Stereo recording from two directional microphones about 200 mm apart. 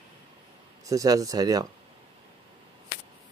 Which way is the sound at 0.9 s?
15° right (ahead or behind).